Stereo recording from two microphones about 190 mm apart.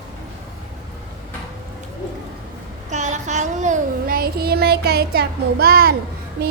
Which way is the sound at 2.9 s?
40° right (ahead or behind).